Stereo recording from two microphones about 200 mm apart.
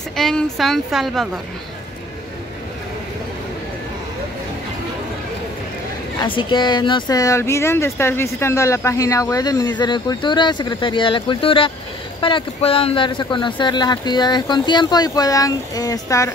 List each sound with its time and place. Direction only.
0.1 s a woman's voice: centre (ahead or behind)
6.2 s speech: 25° left (ahead or behind)